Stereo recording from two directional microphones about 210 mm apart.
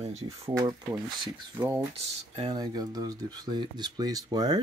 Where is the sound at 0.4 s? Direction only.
20° right (ahead or behind).